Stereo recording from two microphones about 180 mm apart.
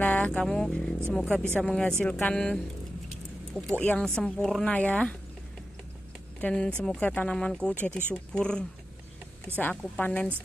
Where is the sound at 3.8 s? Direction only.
5° left (ahead or behind).